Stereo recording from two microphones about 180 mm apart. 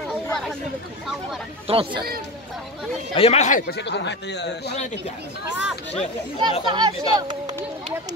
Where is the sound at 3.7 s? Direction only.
75° left (ahead or behind).